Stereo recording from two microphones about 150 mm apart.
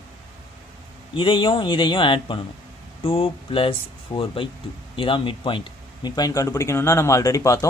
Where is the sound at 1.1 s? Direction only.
35° left (ahead or behind).